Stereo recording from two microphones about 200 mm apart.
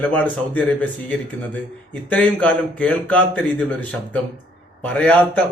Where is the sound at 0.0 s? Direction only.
10° left (ahead or behind).